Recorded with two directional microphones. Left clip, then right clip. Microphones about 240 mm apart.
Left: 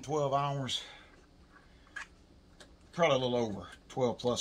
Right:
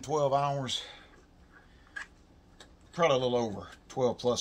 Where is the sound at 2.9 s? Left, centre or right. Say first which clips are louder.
Right 2 dB; right.